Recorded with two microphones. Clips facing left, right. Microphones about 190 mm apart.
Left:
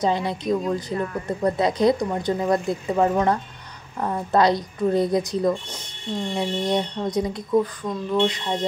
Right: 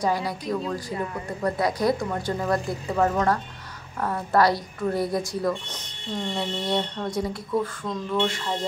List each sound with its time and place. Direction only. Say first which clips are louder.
0.0 s speech: left 3 dB; 25° left (ahead or behind)